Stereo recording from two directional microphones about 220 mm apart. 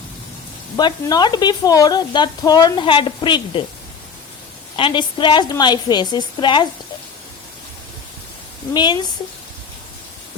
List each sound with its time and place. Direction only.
0.8 s speech: 20° left (ahead or behind)
4.8 s speech: 20° left (ahead or behind)
8.7 s speech: 20° left (ahead or behind)